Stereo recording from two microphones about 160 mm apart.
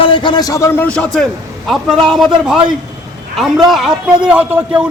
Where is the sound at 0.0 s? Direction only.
30° left (ahead or behind).